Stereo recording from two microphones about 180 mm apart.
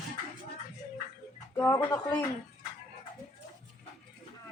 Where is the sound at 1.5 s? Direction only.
15° left (ahead or behind).